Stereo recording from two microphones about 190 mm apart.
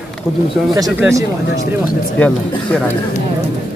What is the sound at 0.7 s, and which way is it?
Speech, 15° right (ahead or behind).